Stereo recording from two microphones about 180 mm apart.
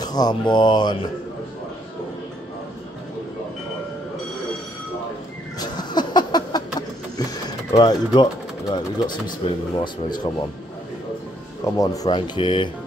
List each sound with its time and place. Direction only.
0.0 s speech: 20° left (ahead or behind)
5.6 s a sound: 25° left (ahead or behind)
7.7 s speech: 25° left (ahead or behind)
11.6 s speech: 20° left (ahead or behind)